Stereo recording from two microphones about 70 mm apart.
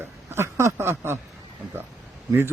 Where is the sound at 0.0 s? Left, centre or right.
Right.